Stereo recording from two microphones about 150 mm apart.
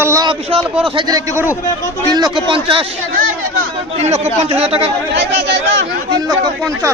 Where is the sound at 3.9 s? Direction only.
50° right (ahead or behind).